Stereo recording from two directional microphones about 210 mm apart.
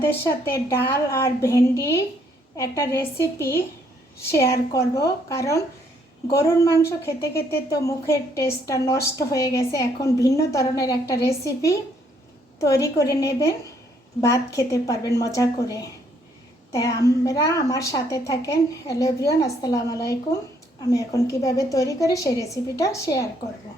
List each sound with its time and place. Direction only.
0.0 s a woman's voice: 10° left (ahead or behind)